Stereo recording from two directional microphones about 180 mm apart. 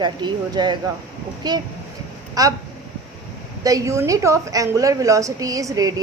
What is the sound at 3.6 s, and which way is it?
A woman's voice, 20° right (ahead or behind).